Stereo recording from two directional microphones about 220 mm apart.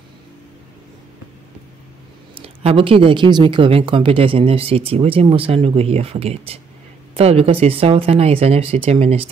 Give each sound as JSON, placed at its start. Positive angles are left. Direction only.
{"t": 2.3, "sound": "speech", "side_deg": -25}